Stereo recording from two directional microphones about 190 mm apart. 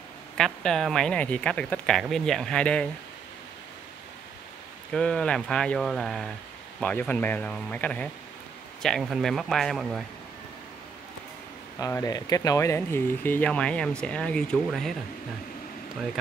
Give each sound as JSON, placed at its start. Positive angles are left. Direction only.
{"t": 0.4, "sound": "speech", "side_deg": 0}
{"t": 4.9, "sound": "speech", "side_deg": 5}
{"t": 11.8, "sound": "speech", "side_deg": 20}